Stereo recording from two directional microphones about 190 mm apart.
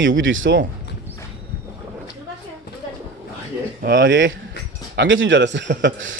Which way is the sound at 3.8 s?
50° right (ahead or behind).